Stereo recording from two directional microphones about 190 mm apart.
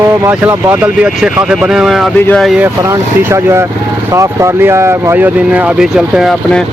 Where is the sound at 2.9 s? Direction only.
15° right (ahead or behind).